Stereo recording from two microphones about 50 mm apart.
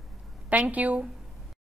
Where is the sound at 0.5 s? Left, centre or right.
Right.